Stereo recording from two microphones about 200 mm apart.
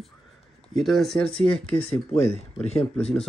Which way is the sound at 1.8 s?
30° left (ahead or behind).